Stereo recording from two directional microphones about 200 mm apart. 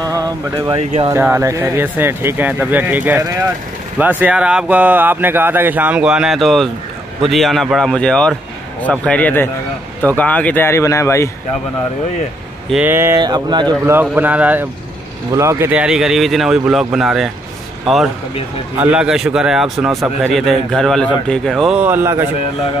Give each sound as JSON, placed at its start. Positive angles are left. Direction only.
{"t": 0.0, "sound": "speech", "side_deg": -20}
{"t": 12.7, "sound": "speech", "side_deg": -10}
{"t": 18.8, "sound": "speech", "side_deg": -5}